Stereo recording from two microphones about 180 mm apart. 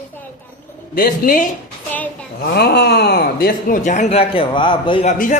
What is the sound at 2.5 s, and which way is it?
Speech, 65° left (ahead or behind).